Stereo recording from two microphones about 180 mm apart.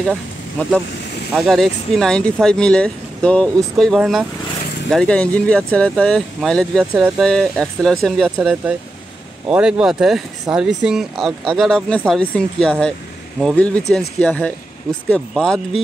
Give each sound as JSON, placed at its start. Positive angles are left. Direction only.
{"t": 0.0, "sound": "speech", "side_deg": 0}